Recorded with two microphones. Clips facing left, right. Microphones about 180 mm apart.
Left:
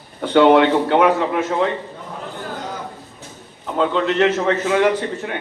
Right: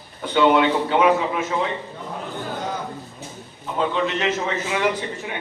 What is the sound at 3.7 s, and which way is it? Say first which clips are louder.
A man's voice: left 5 dB; 60° left (ahead or behind).